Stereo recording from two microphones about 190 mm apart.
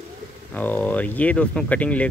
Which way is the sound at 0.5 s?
10° left (ahead or behind).